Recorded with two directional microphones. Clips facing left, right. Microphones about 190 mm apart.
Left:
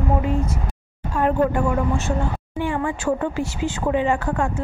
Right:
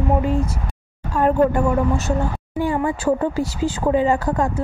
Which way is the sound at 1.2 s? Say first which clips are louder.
Right 3 dB; 40° right (ahead or behind).